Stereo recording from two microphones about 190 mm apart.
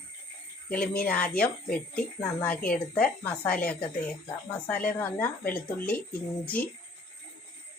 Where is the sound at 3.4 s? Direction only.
50° left (ahead or behind).